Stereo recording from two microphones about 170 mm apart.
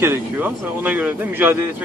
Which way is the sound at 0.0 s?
10° right (ahead or behind).